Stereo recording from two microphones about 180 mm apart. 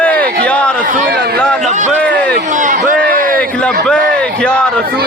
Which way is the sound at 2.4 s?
45° right (ahead or behind).